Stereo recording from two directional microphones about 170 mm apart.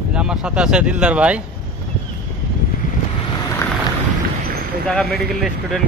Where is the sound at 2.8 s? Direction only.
50° left (ahead or behind).